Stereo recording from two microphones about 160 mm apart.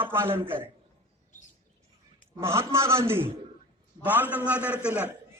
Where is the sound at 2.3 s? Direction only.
15° right (ahead or behind).